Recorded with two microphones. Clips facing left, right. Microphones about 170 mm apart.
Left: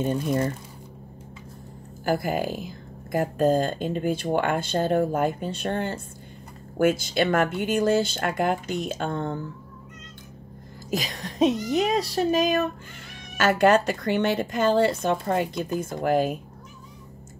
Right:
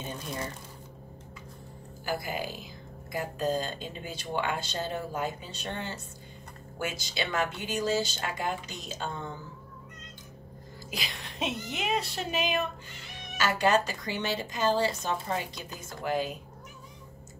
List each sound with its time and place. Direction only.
0.0 s speech: 50° left (ahead or behind)
2.0 s speech: 50° left (ahead or behind)
10.9 s speech: 40° left (ahead or behind)
13.4 s speech: 55° left (ahead or behind)